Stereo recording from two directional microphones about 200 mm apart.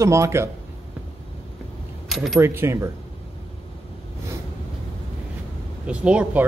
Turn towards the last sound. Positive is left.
turn(degrees=-5)  # may be behind; listen again after turning